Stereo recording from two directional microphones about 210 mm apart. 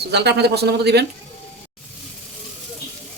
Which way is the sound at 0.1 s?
55° right (ahead or behind).